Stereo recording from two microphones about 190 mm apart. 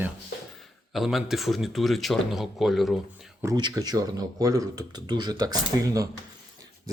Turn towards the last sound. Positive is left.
turn(degrees=-20)  # may be behind; listen again after turning